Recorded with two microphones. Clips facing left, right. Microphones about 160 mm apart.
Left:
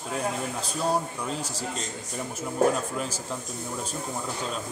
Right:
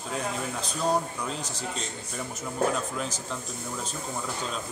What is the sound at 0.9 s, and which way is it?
Speech, 10° left (ahead or behind).